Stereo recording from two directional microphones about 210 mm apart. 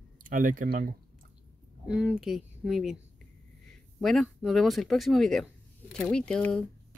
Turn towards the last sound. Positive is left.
turn(degrees=5)  # may be behind; listen again after turning